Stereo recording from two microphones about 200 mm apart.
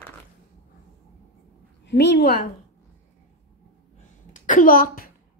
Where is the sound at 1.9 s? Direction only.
55° left (ahead or behind).